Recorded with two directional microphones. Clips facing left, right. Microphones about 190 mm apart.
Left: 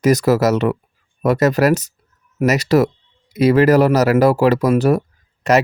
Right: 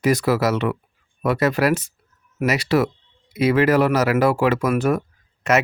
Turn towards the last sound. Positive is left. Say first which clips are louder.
# left 4 dB
turn(degrees=35)  # may be behind; listen again after turning